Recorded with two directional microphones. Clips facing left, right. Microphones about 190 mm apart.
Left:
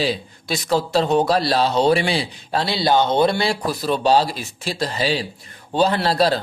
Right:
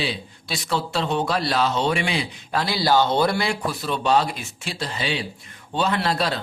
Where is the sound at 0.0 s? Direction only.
40° left (ahead or behind).